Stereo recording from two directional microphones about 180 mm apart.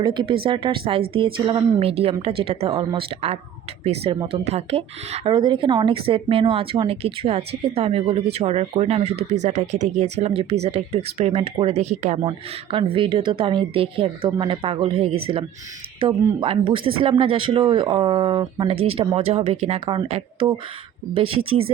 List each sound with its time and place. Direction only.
0.0 s speech: 25° right (ahead or behind)